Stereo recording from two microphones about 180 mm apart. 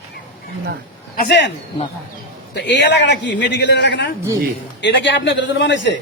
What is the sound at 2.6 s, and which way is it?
A man's voice, 75° left (ahead or behind).